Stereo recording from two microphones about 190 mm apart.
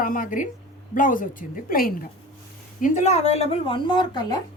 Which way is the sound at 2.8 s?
40° left (ahead or behind).